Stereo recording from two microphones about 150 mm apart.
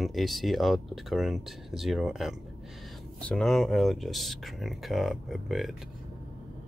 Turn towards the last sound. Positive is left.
turn(degrees=0)  # may be behind; listen again after turning